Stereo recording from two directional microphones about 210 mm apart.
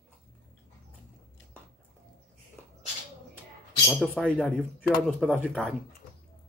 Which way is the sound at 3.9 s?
Centre (ahead or behind).